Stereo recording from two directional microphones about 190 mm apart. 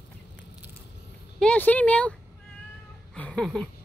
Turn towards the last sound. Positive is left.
turn(degrees=0)  # may be behind; listen again after turning